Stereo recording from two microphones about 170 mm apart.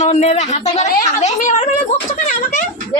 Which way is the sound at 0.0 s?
40° left (ahead or behind).